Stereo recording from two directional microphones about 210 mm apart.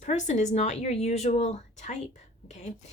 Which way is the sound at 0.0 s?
35° left (ahead or behind).